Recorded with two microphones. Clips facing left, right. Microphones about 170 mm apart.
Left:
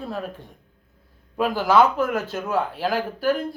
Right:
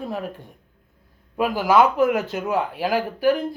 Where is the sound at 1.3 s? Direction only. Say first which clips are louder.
Right 1 dB; 10° right (ahead or behind).